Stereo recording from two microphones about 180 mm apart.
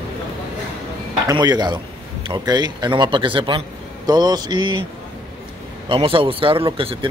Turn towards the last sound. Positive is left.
turn(degrees=-30)  # may be behind; listen again after turning